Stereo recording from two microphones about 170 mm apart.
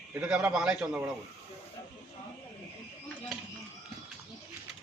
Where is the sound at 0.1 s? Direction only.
5° right (ahead or behind).